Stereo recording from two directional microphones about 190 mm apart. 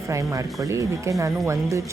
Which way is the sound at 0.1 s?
15° right (ahead or behind).